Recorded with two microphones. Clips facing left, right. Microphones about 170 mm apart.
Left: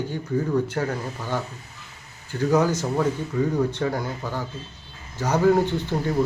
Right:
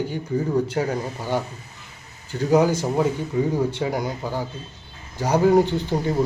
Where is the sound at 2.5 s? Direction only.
10° right (ahead or behind).